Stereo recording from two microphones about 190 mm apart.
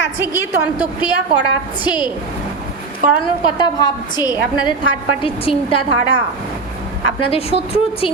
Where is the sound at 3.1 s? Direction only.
20° left (ahead or behind).